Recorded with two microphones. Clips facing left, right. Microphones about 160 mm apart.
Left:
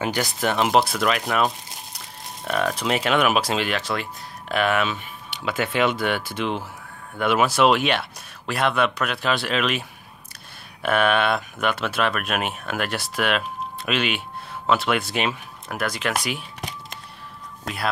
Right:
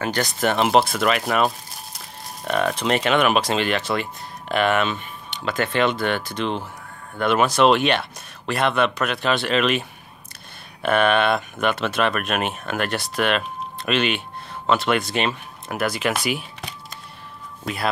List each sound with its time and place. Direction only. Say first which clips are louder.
0.0 s speech: right 2 dB; 10° left (ahead or behind)